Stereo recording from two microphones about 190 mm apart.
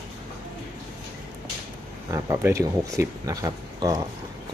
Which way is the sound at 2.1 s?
15° right (ahead or behind).